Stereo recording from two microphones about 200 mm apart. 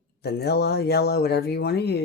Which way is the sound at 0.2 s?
55° left (ahead or behind).